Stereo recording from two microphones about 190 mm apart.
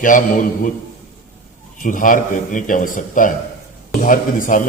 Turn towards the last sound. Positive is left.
turn(degrees=45)  # may be behind; listen again after turning